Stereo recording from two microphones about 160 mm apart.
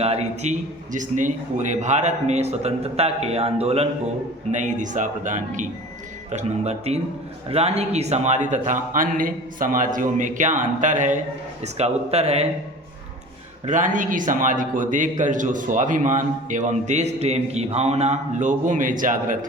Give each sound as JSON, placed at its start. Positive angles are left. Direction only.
{"t": 0.0, "sound": "a man's voice", "side_deg": -40}
{"t": 4.5, "sound": "a man's voice", "side_deg": -50}
{"t": 6.3, "sound": "a man's voice", "side_deg": -40}
{"t": 13.7, "sound": "a man's voice", "side_deg": -50}